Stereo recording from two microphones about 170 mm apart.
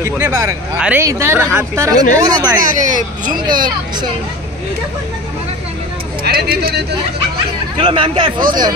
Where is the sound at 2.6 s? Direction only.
50° right (ahead or behind).